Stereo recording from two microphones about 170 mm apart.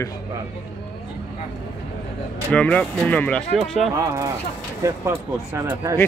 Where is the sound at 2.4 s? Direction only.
5° left (ahead or behind).